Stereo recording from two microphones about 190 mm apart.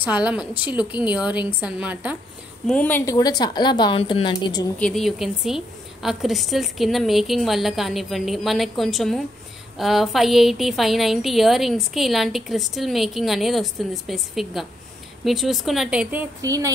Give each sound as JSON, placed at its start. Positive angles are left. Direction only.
{"t": 0.0, "sound": "a woman's voice", "side_deg": -5}
{"t": 2.6, "sound": "a woman's voice", "side_deg": 5}
{"t": 3.2, "sound": "a woman's voice", "side_deg": 20}
{"t": 4.7, "sound": "a woman's voice", "side_deg": 5}
{"t": 16.3, "sound": "speech", "side_deg": -20}